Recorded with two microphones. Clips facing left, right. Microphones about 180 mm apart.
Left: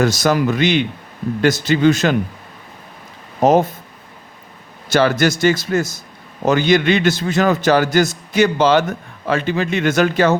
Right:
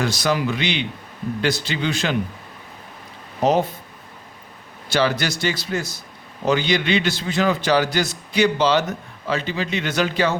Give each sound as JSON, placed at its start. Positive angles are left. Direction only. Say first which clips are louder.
{"t": 0.0, "sound": "a man's voice", "louder": "left 6 dB", "side_deg": 45}
{"t": 3.4, "sound": "a man's voice", "louder": "left 5 dB", "side_deg": 45}
{"t": 4.9, "sound": "a man's voice", "louder": "left 6 dB", "side_deg": 45}